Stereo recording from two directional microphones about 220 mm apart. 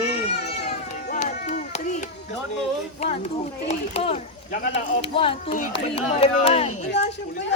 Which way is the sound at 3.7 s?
30° left (ahead or behind).